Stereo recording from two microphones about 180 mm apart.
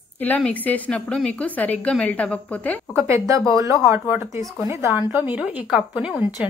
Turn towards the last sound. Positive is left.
turn(degrees=-5)  # may be behind; listen again after turning